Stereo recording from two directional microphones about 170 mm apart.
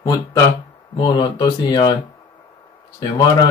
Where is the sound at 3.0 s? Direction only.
25° left (ahead or behind).